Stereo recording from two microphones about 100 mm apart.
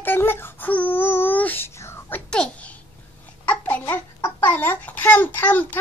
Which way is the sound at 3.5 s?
15° left (ahead or behind).